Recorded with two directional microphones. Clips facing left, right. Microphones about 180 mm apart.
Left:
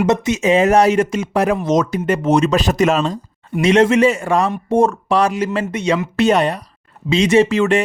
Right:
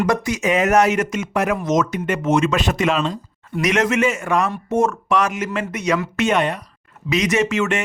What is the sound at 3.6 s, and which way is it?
Speech, 30° left (ahead or behind).